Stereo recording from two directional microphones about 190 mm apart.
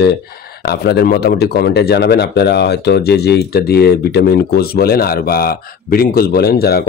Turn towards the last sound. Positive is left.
turn(degrees=55)  # may be behind; listen again after turning